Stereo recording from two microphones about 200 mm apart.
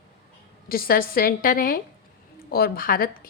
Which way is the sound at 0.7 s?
45° left (ahead or behind).